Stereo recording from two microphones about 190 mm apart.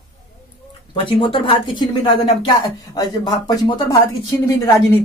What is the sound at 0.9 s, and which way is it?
Speech, 25° left (ahead or behind).